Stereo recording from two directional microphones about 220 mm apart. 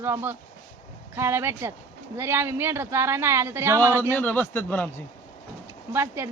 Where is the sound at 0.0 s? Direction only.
10° right (ahead or behind).